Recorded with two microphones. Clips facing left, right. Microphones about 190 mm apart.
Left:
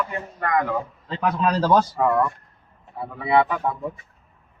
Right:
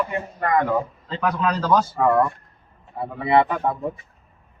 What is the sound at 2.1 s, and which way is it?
Speech, 35° right (ahead or behind).